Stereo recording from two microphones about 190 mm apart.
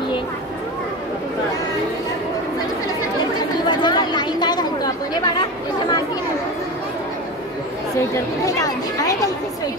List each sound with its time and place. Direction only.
3.3 s chatter: 20° left (ahead or behind)
8.1 s chatter: 20° left (ahead or behind)